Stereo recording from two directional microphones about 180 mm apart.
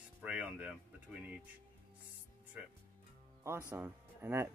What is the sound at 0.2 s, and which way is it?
Speech, 10° right (ahead or behind).